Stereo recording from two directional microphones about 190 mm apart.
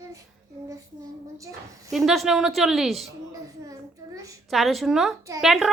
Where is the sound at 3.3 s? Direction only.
15° right (ahead or behind).